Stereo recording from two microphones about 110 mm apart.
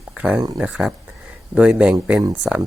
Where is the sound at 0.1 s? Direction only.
10° right (ahead or behind).